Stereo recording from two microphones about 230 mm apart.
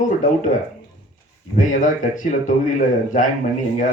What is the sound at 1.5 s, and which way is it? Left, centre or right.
Speech, left.